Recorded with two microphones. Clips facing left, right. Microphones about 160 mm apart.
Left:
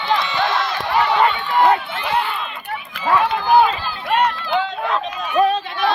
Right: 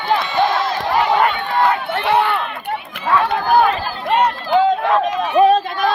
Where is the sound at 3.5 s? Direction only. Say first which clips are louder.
Left 1 dB; 50° right (ahead or behind).